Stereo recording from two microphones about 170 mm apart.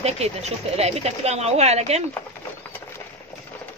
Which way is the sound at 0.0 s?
40° right (ahead or behind).